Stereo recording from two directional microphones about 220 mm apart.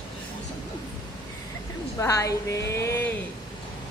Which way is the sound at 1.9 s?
15° left (ahead or behind).